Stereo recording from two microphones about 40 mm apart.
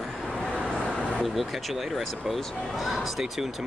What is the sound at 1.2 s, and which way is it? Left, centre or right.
Speech, centre.